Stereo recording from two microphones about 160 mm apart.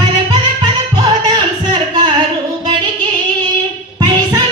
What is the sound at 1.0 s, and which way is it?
Music, 25° right (ahead or behind).